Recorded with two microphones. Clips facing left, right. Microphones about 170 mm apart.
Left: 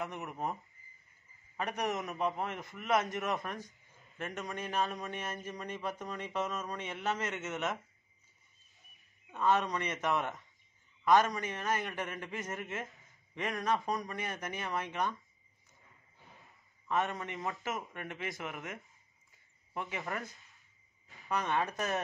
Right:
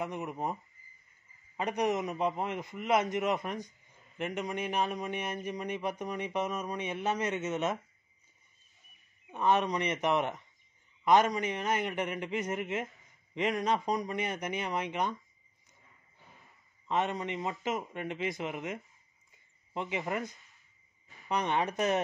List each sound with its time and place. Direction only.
0.0 s speech: 15° right (ahead or behind)
1.6 s speech: 20° right (ahead or behind)
9.3 s speech: 15° right (ahead or behind)
16.8 s speech: 20° right (ahead or behind)